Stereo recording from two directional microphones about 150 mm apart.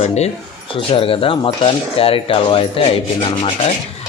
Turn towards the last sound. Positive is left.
turn(degrees=35)  # may be behind; listen again after turning